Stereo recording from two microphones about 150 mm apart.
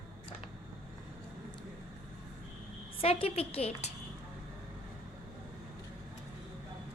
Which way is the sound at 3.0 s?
40° left (ahead or behind).